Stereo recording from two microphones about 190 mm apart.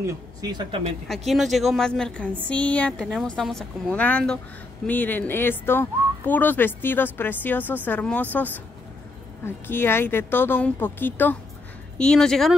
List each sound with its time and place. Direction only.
0.0 s speech: 20° right (ahead or behind)
1.0 s a woman's voice: centre (ahead or behind)